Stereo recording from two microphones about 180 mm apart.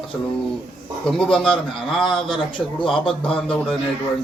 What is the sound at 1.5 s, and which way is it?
Speech, 30° left (ahead or behind).